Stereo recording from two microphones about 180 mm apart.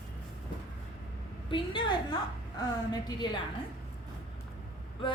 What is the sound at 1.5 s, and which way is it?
Speech, 25° left (ahead or behind).